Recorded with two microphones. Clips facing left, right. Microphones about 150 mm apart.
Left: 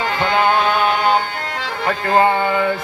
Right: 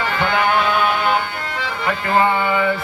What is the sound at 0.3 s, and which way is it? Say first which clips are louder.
Music: left 3 dB; 25° left (ahead or behind).